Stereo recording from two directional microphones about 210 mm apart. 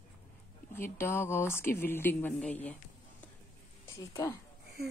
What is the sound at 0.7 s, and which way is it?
A woman's voice, 10° left (ahead or behind).